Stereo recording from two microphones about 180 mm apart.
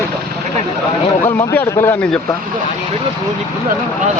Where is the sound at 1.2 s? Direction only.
15° left (ahead or behind).